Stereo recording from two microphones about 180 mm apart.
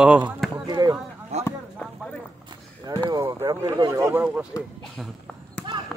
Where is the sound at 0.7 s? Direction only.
20° right (ahead or behind).